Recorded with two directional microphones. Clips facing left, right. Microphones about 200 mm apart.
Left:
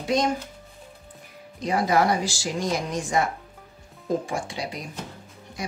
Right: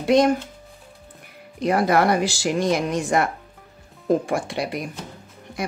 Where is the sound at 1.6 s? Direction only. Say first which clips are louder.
Right 3 dB; 60° right (ahead or behind).